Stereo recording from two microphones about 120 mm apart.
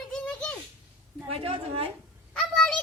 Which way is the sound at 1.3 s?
50° right (ahead or behind).